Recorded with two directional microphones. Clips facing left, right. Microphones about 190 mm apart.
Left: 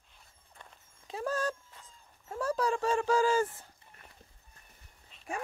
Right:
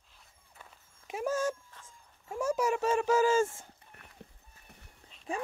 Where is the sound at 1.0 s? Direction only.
20° right (ahead or behind).